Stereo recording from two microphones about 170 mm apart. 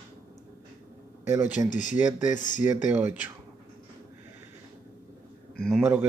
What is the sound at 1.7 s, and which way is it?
Speech, 50° left (ahead or behind).